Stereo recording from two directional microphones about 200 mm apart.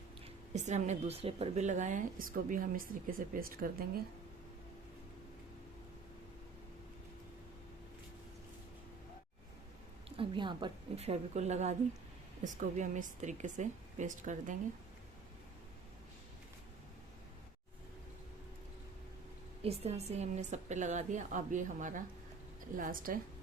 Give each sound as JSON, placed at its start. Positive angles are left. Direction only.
{"t": 0.5, "sound": "a woman's voice", "side_deg": -35}
{"t": 10.2, "sound": "a woman's voice", "side_deg": -25}
{"t": 19.6, "sound": "a woman's voice", "side_deg": -30}